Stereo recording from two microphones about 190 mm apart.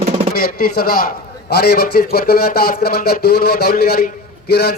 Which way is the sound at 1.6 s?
55° left (ahead or behind).